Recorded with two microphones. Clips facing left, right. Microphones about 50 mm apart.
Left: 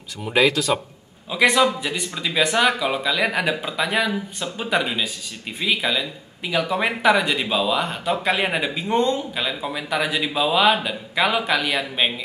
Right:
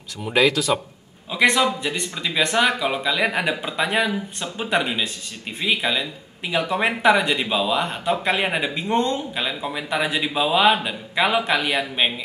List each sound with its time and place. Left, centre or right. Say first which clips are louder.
0.2 s a man's voice: even; centre
9.3 s a man's voice: even; centre